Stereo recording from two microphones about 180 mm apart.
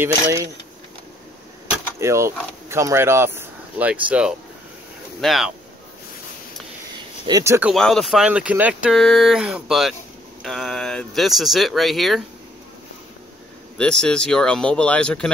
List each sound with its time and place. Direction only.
0.0 s speech: 15° right (ahead or behind)
2.0 s speech: 15° right (ahead or behind); by 5.5 s centre (ahead or behind)
7.2 s speech: 20° right (ahead or behind)
7.7 s speech: centre (ahead or behind)
13.7 s speech: 5° left (ahead or behind)